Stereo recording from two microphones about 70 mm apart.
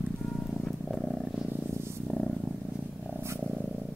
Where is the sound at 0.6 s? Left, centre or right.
Centre.